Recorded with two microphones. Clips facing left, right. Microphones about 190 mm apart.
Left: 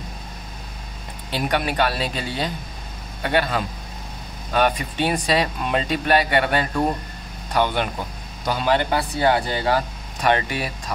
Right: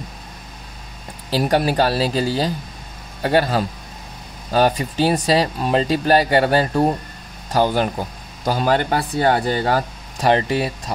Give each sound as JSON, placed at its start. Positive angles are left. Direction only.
{"t": 1.3, "sound": "speech", "side_deg": -35}